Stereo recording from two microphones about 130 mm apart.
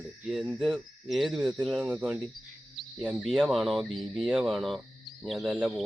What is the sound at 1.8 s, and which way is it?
Cricket, 10° right (ahead or behind).